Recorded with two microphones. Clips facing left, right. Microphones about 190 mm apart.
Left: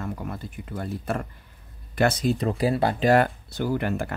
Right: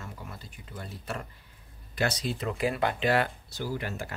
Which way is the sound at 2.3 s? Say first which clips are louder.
Left 6 dB; 35° left (ahead or behind).